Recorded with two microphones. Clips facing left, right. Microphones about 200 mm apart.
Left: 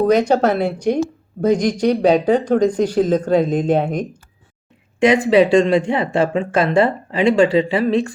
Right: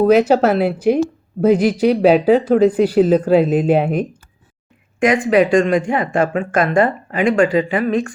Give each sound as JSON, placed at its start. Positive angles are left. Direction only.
{"t": 0.0, "sound": "a woman's voice", "side_deg": -5}
{"t": 5.3, "sound": "speech", "side_deg": 30}